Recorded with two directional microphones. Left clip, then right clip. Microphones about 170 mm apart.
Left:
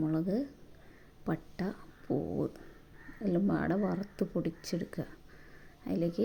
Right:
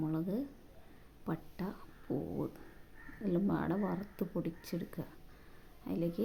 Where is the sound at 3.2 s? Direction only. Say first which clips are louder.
Left 3 dB; 15° left (ahead or behind).